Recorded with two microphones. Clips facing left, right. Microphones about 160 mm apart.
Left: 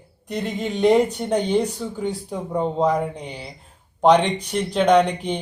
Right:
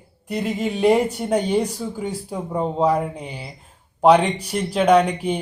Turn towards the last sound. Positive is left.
turn(degrees=-10)  # may be behind; listen again after turning